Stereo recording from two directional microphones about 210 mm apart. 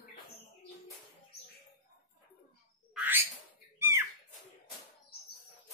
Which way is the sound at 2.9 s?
10° right (ahead or behind).